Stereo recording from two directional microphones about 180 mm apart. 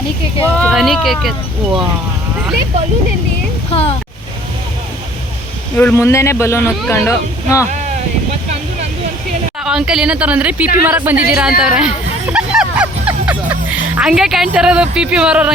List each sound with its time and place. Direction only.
0.4 s speech: 10° left (ahead or behind)
3.7 s a sound: 35° left (ahead or behind)
5.7 s speech: 10° left (ahead or behind)
9.6 s speech: 5° right (ahead or behind)
12.3 s music: 5° right (ahead or behind)